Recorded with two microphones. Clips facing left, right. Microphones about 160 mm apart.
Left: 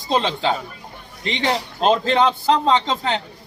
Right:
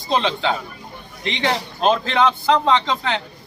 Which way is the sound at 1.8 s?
25° left (ahead or behind).